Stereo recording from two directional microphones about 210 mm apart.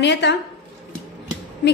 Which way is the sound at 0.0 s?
55° left (ahead or behind).